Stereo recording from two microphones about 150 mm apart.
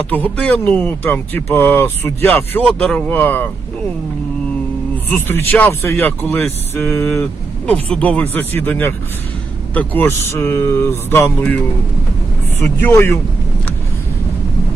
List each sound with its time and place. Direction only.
0.1 s speech: 10° left (ahead or behind)
5.0 s speech: 15° left (ahead or behind)
12.6 s speech: 15° left (ahead or behind)